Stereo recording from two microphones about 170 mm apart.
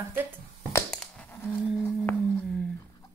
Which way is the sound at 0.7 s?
15° left (ahead or behind).